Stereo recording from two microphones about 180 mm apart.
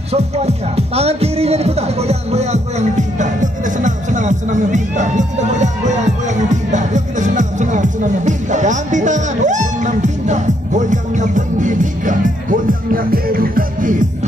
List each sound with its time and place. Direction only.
0.1 s music: 35° right (ahead or behind)